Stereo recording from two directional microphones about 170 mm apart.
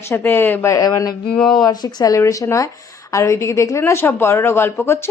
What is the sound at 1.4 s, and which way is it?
Speech, 5° left (ahead or behind).